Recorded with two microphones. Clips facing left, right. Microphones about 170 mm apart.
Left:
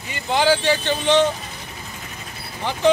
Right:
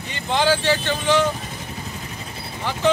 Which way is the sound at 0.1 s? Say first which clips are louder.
Left 1 dB; 10° left (ahead or behind).